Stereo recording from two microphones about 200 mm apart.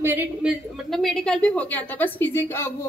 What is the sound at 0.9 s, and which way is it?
A woman's voice, centre (ahead or behind).